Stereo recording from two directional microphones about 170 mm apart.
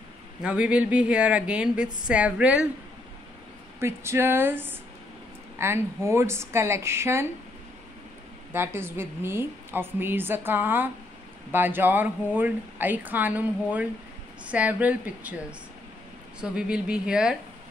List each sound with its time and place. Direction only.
0.4 s speech: 5° right (ahead or behind)
3.8 s speech: 15° right (ahead or behind)
8.5 s a woman's voice: 15° right (ahead or behind)